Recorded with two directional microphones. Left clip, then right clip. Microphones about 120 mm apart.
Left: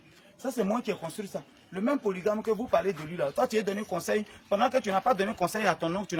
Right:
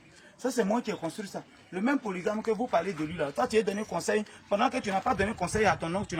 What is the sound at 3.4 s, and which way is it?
Speech, 20° left (ahead or behind).